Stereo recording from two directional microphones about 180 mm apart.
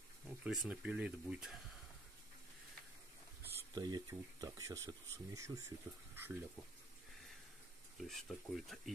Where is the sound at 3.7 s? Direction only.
20° right (ahead or behind).